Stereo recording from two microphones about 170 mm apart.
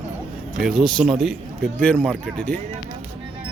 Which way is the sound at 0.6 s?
5° right (ahead or behind).